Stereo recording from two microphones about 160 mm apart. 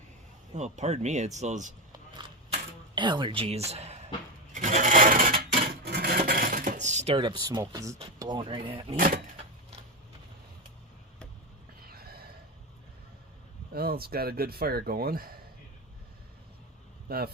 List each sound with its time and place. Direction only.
0.5 s speech: 45° right (ahead or behind)
2.9 s speech: 30° right (ahead or behind)
4.5 s a sound: 50° right (ahead or behind); by 7.6 s 30° right (ahead or behind)
7.7 s speech: 20° right (ahead or behind)
8.2 s speech: 30° right (ahead or behind)
9.0 s speech: 65° right (ahead or behind)
9.4 s a sound: 40° right (ahead or behind)
11.9 s a sound: 70° right (ahead or behind)
13.7 s speech: 75° right (ahead or behind)
17.1 s speech: 70° right (ahead or behind)